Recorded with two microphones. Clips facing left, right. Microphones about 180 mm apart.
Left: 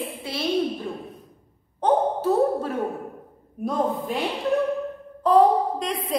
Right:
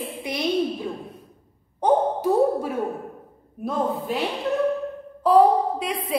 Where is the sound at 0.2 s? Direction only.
15° right (ahead or behind).